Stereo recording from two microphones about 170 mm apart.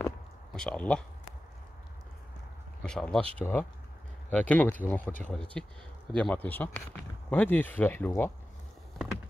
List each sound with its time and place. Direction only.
0.6 s speech: 5° left (ahead or behind)
2.8 s speech: 5° left (ahead or behind)